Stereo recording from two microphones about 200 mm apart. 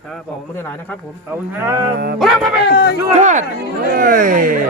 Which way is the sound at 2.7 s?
55° left (ahead or behind).